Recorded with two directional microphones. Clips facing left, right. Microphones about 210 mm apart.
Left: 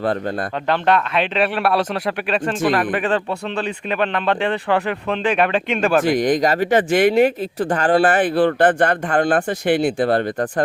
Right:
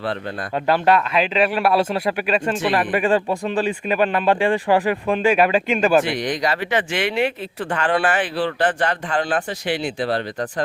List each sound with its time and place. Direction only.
0.7 s a man's voice: 5° right (ahead or behind)
6.1 s speech: 45° left (ahead or behind)
8.0 s speech: 50° left (ahead or behind)